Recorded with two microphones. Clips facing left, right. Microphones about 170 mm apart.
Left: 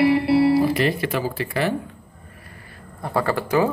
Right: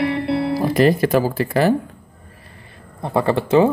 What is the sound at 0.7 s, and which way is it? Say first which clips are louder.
Speech: right 7 dB; 40° right (ahead or behind).